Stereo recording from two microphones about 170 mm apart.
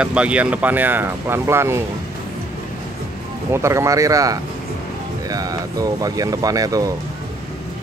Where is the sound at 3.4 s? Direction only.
15° right (ahead or behind).